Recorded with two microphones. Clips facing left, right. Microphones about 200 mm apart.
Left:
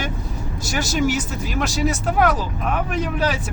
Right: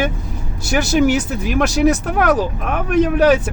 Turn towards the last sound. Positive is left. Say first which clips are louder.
# right 10 dB
turn(degrees=-60)  # may be behind; listen again after turning